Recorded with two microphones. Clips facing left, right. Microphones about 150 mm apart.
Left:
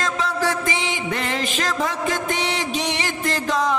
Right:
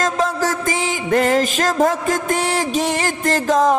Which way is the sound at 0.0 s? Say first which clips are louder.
Right 4 dB; 45° right (ahead or behind).